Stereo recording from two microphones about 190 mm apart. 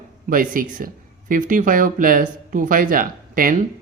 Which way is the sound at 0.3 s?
45° right (ahead or behind).